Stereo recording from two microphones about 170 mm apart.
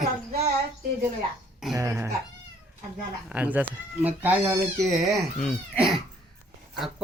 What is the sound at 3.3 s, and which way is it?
Speech, 10° right (ahead or behind).